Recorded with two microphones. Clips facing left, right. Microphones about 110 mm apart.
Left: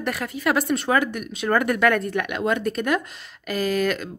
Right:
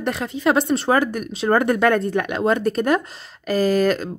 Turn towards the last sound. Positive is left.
turn(degrees=-35)  # may be behind; listen again after turning